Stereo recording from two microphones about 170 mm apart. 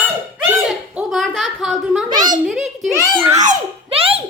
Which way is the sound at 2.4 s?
5° right (ahead or behind).